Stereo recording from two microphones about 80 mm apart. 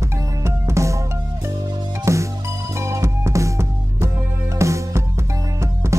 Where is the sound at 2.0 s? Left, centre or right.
Right.